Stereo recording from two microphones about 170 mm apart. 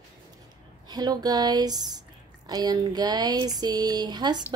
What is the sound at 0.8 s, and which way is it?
A woman's voice, 25° right (ahead or behind).